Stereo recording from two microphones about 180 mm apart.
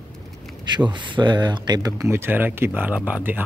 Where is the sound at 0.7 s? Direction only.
25° right (ahead or behind).